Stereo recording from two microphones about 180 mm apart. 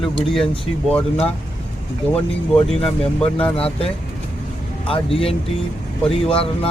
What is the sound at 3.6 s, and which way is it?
Speech, 30° left (ahead or behind).